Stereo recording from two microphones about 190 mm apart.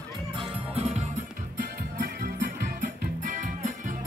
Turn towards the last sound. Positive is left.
turn(degrees=-45)  # may be behind; listen again after turning